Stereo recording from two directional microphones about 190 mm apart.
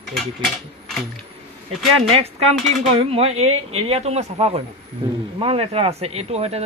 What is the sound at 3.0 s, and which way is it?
Speech, 30° right (ahead or behind).